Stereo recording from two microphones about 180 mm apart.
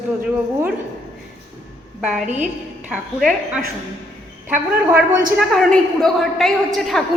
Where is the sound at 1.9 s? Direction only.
Centre (ahead or behind).